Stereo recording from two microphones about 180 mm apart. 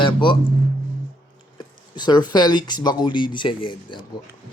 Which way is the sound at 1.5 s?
25° left (ahead or behind).